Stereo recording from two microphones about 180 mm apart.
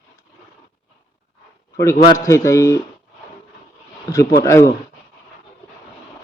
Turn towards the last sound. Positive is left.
turn(degrees=15)  # may be behind; listen again after turning